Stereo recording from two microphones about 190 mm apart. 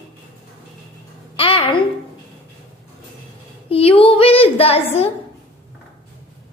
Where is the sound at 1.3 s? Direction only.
30° left (ahead or behind).